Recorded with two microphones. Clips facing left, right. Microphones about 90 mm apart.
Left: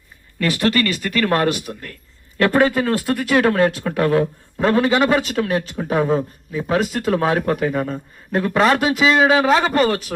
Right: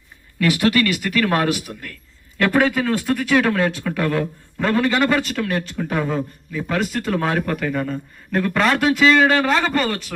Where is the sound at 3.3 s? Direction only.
20° left (ahead or behind).